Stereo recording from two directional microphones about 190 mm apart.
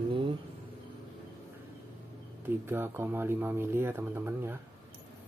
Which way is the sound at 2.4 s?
10° right (ahead or behind).